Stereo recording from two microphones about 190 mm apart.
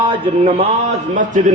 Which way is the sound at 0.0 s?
30° right (ahead or behind).